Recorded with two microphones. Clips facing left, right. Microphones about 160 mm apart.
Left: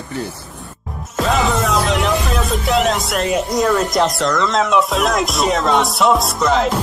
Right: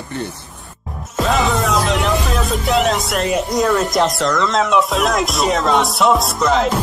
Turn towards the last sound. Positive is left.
turn(degrees=0)  # may be behind; listen again after turning